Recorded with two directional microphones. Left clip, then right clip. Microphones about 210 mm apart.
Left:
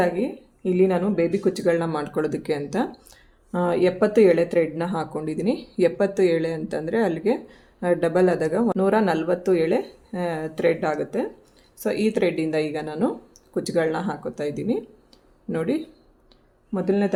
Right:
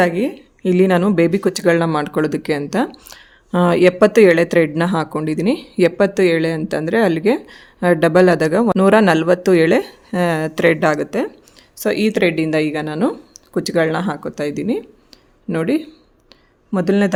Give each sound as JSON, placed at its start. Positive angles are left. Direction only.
{"t": 0.0, "sound": "speech", "side_deg": -45}
{"t": 16.7, "sound": "speech", "side_deg": -50}